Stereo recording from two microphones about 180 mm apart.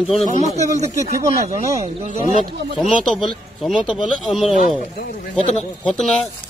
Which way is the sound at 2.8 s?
Centre (ahead or behind).